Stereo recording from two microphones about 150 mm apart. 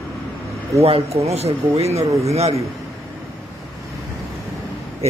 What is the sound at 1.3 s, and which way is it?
A man's voice, 45° right (ahead or behind).